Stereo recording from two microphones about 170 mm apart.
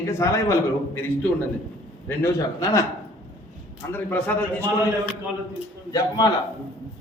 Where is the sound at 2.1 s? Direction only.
15° left (ahead or behind).